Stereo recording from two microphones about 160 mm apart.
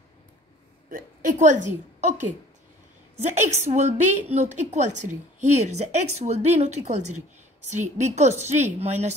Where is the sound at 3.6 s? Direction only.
45° right (ahead or behind).